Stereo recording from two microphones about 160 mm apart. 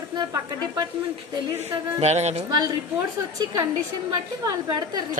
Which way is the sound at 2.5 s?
25° right (ahead or behind).